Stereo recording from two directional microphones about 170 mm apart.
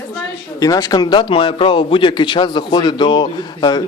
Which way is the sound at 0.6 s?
20° left (ahead or behind).